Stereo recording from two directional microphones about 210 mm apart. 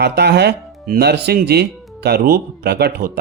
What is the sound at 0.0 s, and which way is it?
Speech, 55° right (ahead or behind).